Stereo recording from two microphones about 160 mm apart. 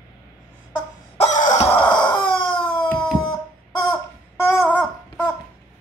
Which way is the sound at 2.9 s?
5° left (ahead or behind).